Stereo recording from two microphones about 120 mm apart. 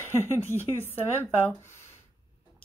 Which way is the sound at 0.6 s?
20° right (ahead or behind).